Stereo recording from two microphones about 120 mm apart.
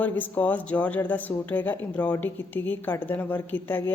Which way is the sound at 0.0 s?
15° left (ahead or behind).